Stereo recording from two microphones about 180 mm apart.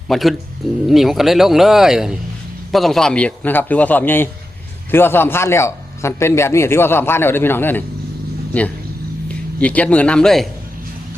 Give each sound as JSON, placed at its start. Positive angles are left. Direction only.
{"t": 0.1, "sound": "a man's voice", "side_deg": 0}
{"t": 9.6, "sound": "a man's voice", "side_deg": 5}